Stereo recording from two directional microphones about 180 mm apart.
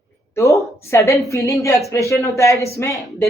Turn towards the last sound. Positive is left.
turn(degrees=0)  # may be behind; listen again after turning